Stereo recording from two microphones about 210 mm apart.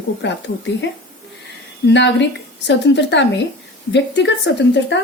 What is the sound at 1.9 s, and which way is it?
A woman's voice, 55° left (ahead or behind).